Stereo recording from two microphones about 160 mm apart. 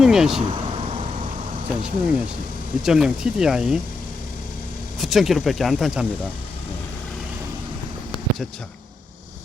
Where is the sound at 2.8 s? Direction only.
5° right (ahead or behind).